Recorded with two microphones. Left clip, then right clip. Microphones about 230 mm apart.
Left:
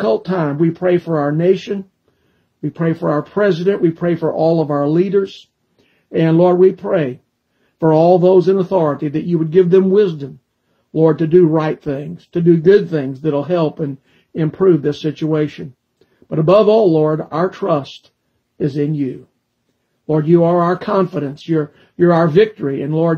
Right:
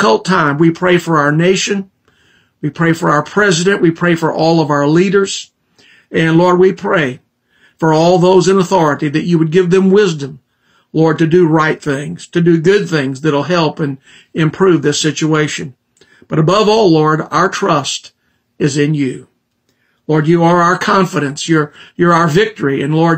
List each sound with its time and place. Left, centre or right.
0.0 s speech: centre
20.1 s speech: centre